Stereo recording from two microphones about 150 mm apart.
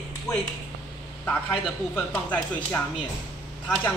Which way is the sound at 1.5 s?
10° left (ahead or behind).